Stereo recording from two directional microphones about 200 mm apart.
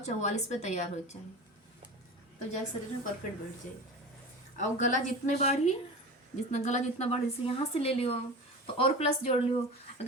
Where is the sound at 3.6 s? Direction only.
40° left (ahead or behind).